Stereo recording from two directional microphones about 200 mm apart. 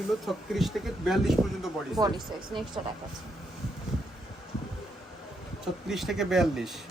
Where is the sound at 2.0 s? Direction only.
20° right (ahead or behind).